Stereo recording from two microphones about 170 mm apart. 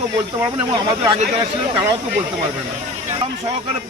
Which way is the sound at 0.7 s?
30° right (ahead or behind).